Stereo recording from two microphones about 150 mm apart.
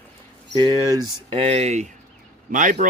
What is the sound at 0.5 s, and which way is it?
Speech, 30° right (ahead or behind).